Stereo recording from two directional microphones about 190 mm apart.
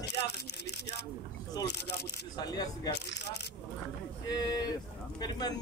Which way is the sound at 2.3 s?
20° left (ahead or behind).